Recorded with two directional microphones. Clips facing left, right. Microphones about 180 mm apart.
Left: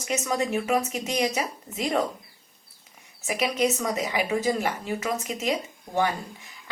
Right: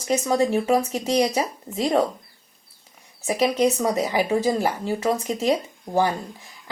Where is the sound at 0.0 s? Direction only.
30° right (ahead or behind).